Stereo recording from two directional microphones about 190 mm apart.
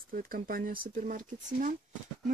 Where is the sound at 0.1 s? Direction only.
50° right (ahead or behind).